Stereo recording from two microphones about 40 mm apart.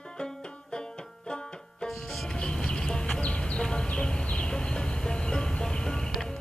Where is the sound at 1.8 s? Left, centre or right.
Centre.